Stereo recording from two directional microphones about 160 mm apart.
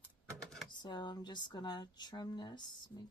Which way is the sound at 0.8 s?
30° left (ahead or behind).